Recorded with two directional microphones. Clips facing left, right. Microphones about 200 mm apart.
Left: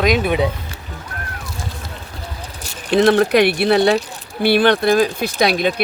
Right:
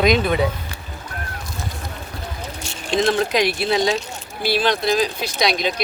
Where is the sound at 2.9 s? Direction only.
60° left (ahead or behind).